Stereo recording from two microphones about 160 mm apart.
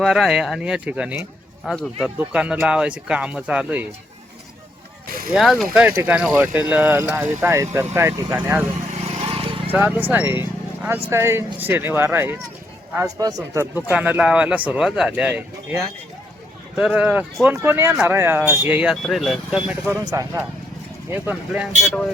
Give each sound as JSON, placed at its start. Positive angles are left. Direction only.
{"t": 0.0, "sound": "speech", "side_deg": 0}
{"t": 5.3, "sound": "speech", "side_deg": 0}
{"t": 5.7, "sound": "speech", "side_deg": -10}
{"t": 9.0, "sound": "vehicle", "side_deg": -35}
{"t": 9.7, "sound": "speech", "side_deg": -10}
{"t": 20.1, "sound": "speech", "side_deg": -20}